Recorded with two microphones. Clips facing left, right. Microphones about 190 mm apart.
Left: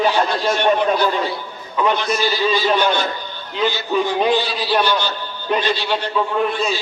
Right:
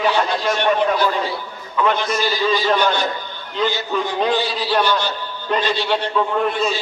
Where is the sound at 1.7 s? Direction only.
15° left (ahead or behind).